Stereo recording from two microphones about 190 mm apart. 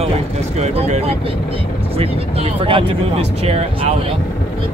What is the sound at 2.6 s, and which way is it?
Speech, 30° right (ahead or behind).